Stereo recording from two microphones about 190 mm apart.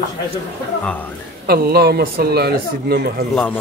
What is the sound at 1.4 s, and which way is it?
Speech, 55° right (ahead or behind).